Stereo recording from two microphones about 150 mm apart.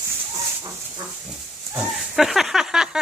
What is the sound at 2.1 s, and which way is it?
Speech, centre (ahead or behind).